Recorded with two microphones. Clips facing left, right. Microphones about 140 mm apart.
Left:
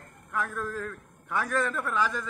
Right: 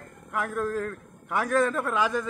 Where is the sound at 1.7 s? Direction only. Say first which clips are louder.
Right 3 dB; 20° right (ahead or behind).